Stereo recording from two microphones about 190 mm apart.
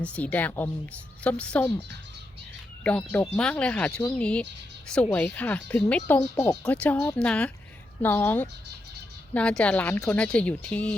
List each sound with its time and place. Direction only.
0.0 s speech: 5° left (ahead or behind)
2.8 s speech: 5° left (ahead or behind)